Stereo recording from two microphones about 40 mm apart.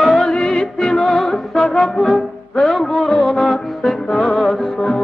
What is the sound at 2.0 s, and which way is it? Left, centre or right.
Music, left.